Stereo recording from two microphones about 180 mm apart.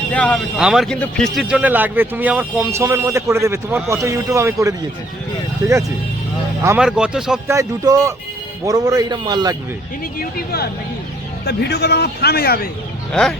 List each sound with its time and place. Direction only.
0.1 s a man's voice: 5° left (ahead or behind); by 5.8 s 15° right (ahead or behind)
6.7 s speech: 5° right (ahead or behind)
7.4 s a man's voice: 15° right (ahead or behind)
10.2 s a man's voice: 60° left (ahead or behind)